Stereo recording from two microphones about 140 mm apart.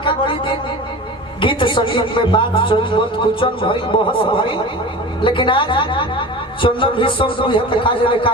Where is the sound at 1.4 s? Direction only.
35° left (ahead or behind).